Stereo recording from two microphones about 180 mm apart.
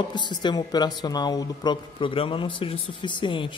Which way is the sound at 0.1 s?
25° left (ahead or behind).